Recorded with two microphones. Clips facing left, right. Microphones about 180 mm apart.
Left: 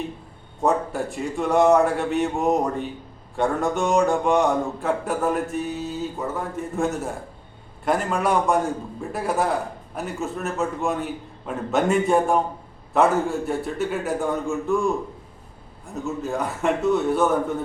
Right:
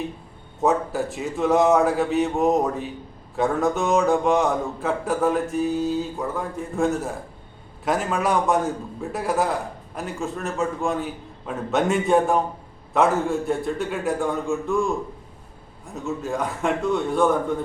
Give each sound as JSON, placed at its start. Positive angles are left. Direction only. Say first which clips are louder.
{"t": 0.6, "sound": "a man's voice", "louder": "right 1 dB", "side_deg": 0}
{"t": 16.0, "sound": "a man's voice", "louder": "even", "side_deg": 0}